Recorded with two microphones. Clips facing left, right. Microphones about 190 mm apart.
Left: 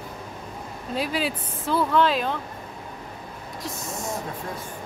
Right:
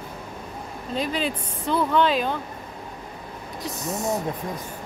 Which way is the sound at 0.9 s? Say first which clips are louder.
Even; 5° left (ahead or behind).